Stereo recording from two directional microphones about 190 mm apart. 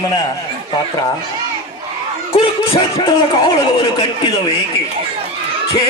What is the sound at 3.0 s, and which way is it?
Speech, 25° left (ahead or behind).